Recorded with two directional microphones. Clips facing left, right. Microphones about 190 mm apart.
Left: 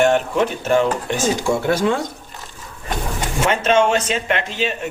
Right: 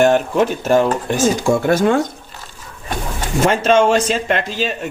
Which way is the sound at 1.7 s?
50° right (ahead or behind).